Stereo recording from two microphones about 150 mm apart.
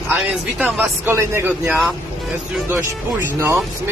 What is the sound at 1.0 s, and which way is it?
Speech, 15° right (ahead or behind).